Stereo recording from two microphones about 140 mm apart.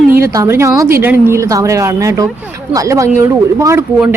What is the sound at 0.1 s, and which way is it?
A woman's voice, 20° right (ahead or behind).